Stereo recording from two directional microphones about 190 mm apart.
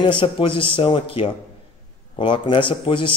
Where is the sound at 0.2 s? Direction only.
25° left (ahead or behind).